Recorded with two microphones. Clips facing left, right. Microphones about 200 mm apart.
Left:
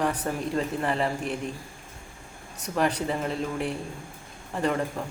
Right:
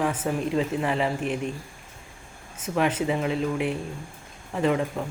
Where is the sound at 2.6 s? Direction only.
Centre (ahead or behind).